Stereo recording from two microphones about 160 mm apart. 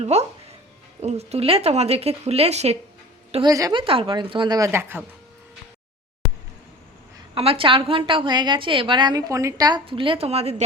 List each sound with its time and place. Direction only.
0.0 s a woman's voice: 45° right (ahead or behind)
3.4 s a woman's voice: 25° right (ahead or behind)
7.3 s a woman's voice: 35° right (ahead or behind)